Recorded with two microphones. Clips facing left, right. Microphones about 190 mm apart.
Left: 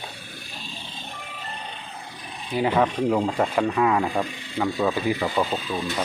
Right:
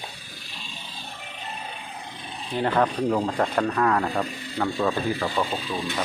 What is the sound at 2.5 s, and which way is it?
Speech, 5° left (ahead or behind).